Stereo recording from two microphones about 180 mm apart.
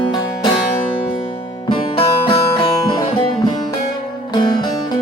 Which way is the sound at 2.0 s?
30° left (ahead or behind).